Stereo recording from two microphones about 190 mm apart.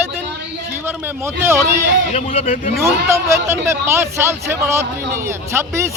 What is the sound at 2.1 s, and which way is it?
Speech, 35° left (ahead or behind).